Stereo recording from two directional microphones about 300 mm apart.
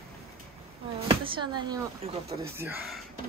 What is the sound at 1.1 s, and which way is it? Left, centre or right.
Speech, centre.